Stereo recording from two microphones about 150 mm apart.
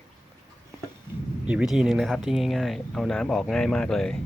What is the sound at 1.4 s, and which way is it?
Speech, 5° right (ahead or behind).